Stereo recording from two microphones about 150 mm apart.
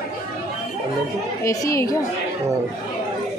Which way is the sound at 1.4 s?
20° left (ahead or behind).